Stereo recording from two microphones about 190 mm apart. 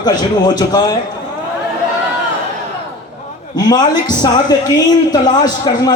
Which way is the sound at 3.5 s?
20° left (ahead or behind).